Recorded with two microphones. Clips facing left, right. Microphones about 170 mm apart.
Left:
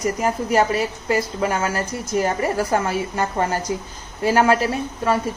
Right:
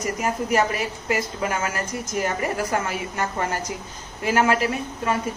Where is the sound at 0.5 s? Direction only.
30° left (ahead or behind).